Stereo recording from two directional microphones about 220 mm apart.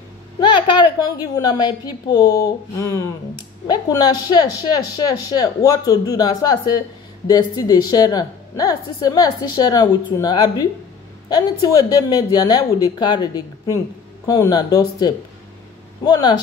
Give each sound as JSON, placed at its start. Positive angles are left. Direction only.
{"t": 0.4, "sound": "a woman's voice", "side_deg": 20}
{"t": 12.1, "sound": "a woman's voice", "side_deg": 15}